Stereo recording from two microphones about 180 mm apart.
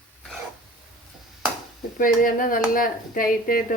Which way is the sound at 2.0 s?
50° left (ahead or behind).